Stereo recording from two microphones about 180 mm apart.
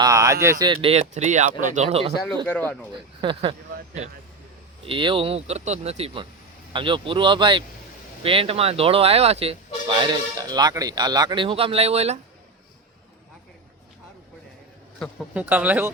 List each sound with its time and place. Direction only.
0.0 s a sound: 20° right (ahead or behind)
0.6 s speech: 30° right (ahead or behind)
2.5 s speech: 10° left (ahead or behind)
3.2 s speech: 25° right (ahead or behind)
4.9 s speech: 30° right (ahead or behind)
15.3 s speech: 10° right (ahead or behind)